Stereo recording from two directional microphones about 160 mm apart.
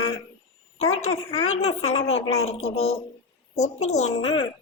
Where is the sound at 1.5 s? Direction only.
40° left (ahead or behind).